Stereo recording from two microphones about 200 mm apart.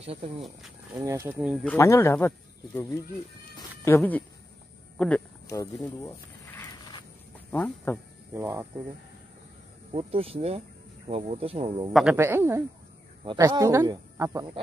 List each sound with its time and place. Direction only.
0.0 s speech: 30° right (ahead or behind)
1.0 s speech: 10° right (ahead or behind)
1.8 s speech: 15° left (ahead or behind)
3.5 s cat: 15° left (ahead or behind)
4.9 s speech: 5° left (ahead or behind)
8.3 s speech: 15° right (ahead or behind)
9.9 s speech: 30° right (ahead or behind)
11.9 s speech: 5° right (ahead or behind)